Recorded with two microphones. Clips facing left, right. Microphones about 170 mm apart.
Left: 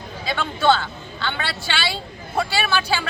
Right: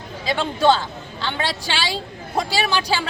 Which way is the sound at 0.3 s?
35° right (ahead or behind).